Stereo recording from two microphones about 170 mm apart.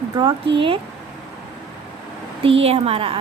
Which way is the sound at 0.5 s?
30° right (ahead or behind).